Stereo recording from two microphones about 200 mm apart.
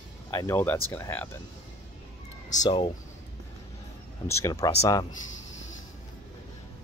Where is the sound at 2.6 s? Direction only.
25° left (ahead or behind).